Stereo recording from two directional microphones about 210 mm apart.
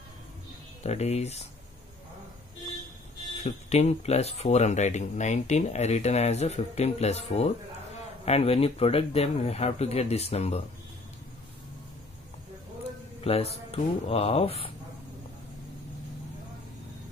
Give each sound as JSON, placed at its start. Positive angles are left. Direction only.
{"t": 0.8, "sound": "speech", "side_deg": 30}
{"t": 3.4, "sound": "speech", "side_deg": 30}
{"t": 13.2, "sound": "speech", "side_deg": 30}